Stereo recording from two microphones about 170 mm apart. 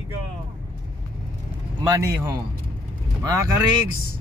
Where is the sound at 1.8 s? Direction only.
20° right (ahead or behind).